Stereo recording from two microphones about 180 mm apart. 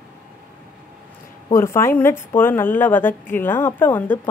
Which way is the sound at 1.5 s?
15° left (ahead or behind).